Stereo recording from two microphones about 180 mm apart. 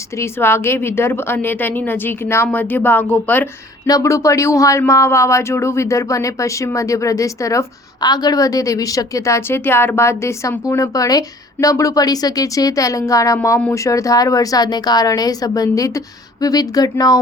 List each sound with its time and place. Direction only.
0.2 s speech: 15° left (ahead or behind)